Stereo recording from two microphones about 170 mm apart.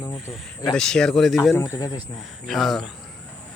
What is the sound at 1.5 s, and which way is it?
Speech, 15° left (ahead or behind).